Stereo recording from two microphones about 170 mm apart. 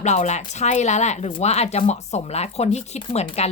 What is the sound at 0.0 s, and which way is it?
Speech, 45° left (ahead or behind).